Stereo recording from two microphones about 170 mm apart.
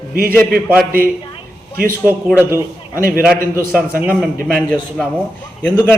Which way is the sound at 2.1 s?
10° right (ahead or behind).